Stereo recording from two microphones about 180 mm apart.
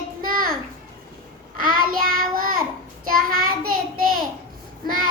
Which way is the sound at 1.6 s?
50° right (ahead or behind).